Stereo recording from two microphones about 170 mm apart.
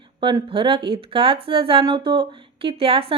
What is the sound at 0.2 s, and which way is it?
Speech, 30° right (ahead or behind).